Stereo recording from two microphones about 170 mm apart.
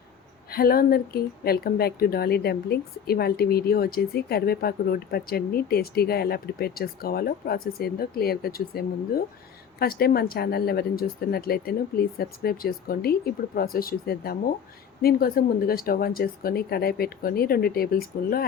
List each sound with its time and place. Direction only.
0.5 s speech: 60° left (ahead or behind)